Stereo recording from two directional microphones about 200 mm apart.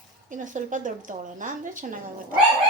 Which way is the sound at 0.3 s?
40° right (ahead or behind).